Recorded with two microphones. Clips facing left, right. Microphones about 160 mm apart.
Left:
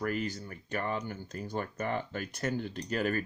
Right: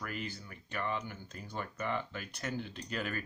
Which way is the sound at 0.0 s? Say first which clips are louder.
Left 8 dB; 45° left (ahead or behind).